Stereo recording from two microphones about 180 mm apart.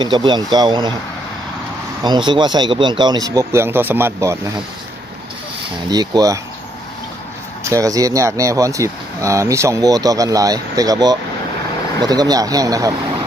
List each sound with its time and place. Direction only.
0.0 s speech: 25° right (ahead or behind)
2.0 s speech: 25° right (ahead or behind)
5.9 s speech: 20° right (ahead or behind)
7.7 s speech: 20° right (ahead or behind)